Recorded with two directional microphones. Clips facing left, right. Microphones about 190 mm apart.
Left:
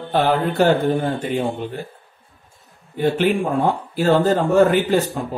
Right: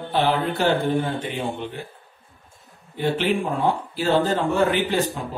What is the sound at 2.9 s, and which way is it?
Speech, 45° left (ahead or behind).